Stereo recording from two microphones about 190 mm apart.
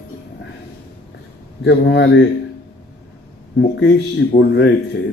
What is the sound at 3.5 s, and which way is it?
A man's voice, 65° left (ahead or behind).